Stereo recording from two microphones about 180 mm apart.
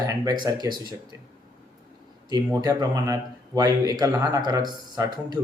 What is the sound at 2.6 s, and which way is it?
Speech, 20° right (ahead or behind).